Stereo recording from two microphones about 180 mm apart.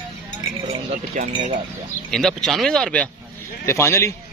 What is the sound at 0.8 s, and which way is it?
Speech, 40° right (ahead or behind).